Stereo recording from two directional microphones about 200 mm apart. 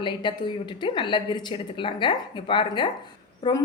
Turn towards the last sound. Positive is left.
turn(degrees=20)  # may be behind; listen again after turning